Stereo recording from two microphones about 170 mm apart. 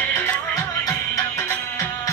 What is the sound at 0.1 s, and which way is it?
Music, 10° left (ahead or behind).